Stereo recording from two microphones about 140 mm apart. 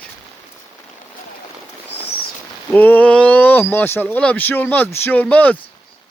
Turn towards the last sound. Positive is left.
turn(degrees=10)  # may be behind; listen again after turning